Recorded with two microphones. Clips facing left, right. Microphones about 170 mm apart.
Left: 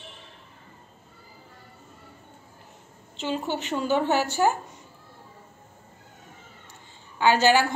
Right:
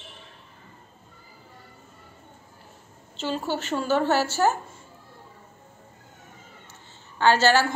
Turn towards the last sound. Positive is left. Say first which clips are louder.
# even
turn(degrees=15)  # may be behind; listen again after turning